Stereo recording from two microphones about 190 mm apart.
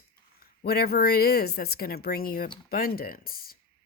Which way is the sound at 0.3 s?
55° left (ahead or behind).